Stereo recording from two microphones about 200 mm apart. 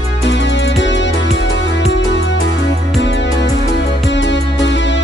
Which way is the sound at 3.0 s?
65° left (ahead or behind).